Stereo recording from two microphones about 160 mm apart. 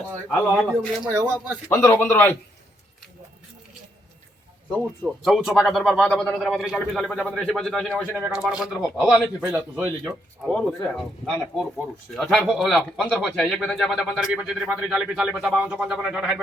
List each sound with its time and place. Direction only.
0.3 s speech: 5° left (ahead or behind)
1.0 s speech: 20° right (ahead or behind)
1.7 s a man's voice: 15° left (ahead or behind)
4.7 s speech: centre (ahead or behind)
12.1 s speech: centre (ahead or behind)